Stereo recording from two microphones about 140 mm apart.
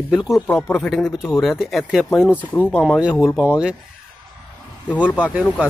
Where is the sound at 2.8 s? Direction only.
5° right (ahead or behind).